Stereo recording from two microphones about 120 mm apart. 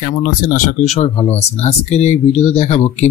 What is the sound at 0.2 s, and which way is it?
Speech, 90° left.